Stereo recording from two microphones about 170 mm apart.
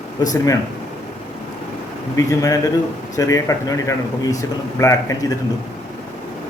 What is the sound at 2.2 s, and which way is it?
Speech, 20° left (ahead or behind).